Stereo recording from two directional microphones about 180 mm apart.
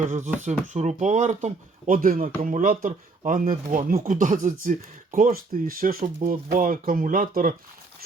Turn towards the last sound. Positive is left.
turn(degrees=-50)  # may be behind; listen again after turning